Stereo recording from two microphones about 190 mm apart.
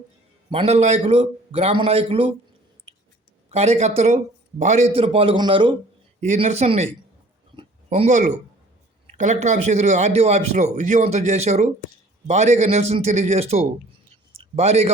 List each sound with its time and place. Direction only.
0.5 s a man's voice: 35° right (ahead or behind)
3.5 s a man's voice: 35° right (ahead or behind)
4.9 s a man's voice: 30° right (ahead or behind)
6.1 s a man's voice: 40° right (ahead or behind)